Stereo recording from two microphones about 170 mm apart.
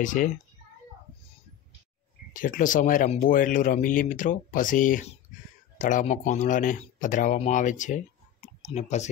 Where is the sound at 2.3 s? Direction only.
55° left (ahead or behind).